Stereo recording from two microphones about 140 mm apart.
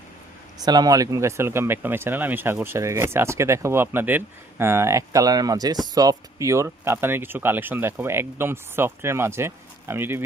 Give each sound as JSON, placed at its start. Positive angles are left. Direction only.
{"t": 0.6, "sound": "speech", "side_deg": -30}